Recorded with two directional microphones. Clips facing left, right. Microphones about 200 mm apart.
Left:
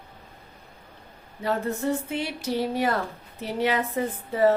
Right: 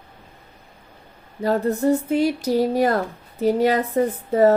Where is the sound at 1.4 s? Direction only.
40° right (ahead or behind).